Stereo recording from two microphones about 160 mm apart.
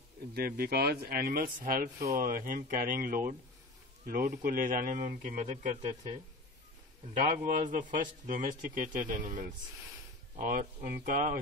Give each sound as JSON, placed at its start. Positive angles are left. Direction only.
{"t": 0.3, "sound": "a man's voice", "side_deg": -70}
{"t": 7.2, "sound": "a man's voice", "side_deg": -55}